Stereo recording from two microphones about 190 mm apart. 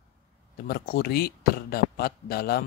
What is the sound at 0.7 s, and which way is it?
A man's voice, 55° left (ahead or behind).